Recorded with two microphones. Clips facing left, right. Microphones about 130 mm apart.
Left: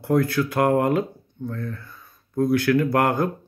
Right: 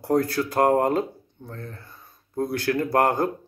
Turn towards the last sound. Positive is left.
turn(degrees=-30)  # may be behind; listen again after turning